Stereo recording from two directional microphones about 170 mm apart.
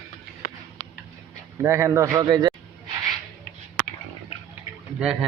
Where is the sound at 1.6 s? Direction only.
15° right (ahead or behind).